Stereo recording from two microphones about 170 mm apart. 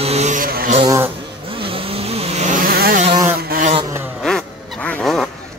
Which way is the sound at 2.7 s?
60° right (ahead or behind).